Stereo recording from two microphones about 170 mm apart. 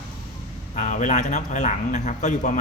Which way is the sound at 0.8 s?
45° left (ahead or behind).